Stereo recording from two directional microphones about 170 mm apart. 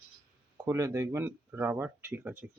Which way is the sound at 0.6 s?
15° right (ahead or behind).